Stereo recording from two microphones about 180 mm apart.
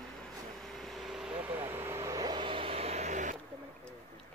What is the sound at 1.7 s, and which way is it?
Speech, 15° right (ahead or behind).